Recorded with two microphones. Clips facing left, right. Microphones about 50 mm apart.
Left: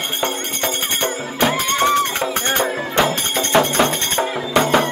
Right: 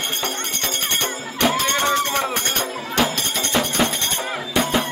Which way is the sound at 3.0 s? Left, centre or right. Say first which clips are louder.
Left 3 dB; left.